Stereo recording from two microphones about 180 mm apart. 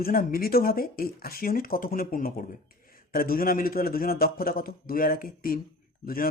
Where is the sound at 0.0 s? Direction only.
55° left (ahead or behind).